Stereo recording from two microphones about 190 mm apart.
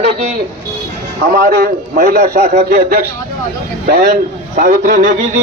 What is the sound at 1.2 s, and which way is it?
A man's voice, 50° right (ahead or behind).